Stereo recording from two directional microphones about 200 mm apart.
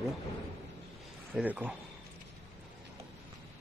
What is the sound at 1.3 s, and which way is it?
Speech, 10° right (ahead or behind).